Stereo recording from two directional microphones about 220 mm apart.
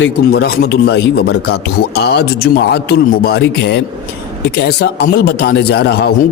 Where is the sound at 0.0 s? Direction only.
45° left (ahead or behind).